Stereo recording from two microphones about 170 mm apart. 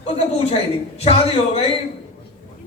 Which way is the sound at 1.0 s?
35° left (ahead or behind).